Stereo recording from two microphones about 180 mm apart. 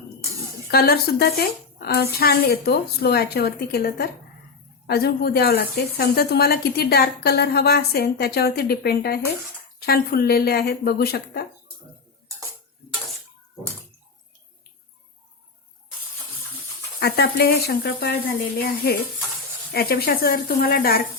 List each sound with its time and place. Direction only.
0.7 s speech: 60° left (ahead or behind)
17.0 s speech: 65° left (ahead or behind)
19.7 s speech: 60° left (ahead or behind)